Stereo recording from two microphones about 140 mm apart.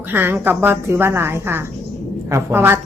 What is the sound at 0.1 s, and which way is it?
A woman's voice, 15° right (ahead or behind).